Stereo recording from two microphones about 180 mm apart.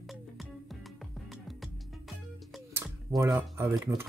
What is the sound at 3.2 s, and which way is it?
Speech, 15° right (ahead or behind).